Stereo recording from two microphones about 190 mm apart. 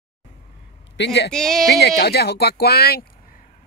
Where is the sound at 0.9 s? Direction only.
65° left (ahead or behind).